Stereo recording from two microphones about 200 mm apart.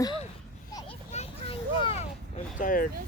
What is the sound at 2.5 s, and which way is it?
Speech, 45° left (ahead or behind).